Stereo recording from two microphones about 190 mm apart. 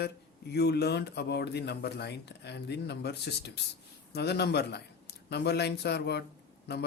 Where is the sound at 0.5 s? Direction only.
60° left (ahead or behind).